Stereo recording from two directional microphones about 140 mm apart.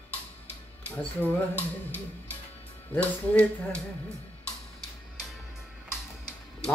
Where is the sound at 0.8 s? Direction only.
10° left (ahead or behind).